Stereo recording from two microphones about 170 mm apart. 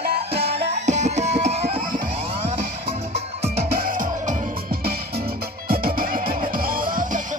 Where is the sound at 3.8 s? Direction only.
50° right (ahead or behind).